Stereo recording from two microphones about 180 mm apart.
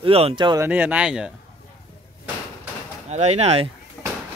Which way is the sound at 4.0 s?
Centre (ahead or behind).